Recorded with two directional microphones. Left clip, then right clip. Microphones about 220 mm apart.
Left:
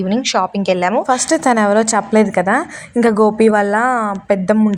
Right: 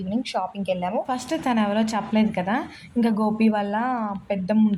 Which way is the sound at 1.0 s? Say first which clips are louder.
Left 12 dB; 40° left (ahead or behind).